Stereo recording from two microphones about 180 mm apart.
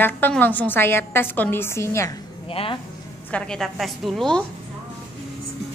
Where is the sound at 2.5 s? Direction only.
30° left (ahead or behind).